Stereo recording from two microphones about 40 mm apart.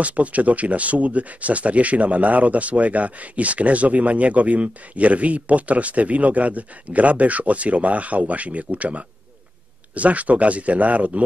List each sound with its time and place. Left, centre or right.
0.0 s speech: right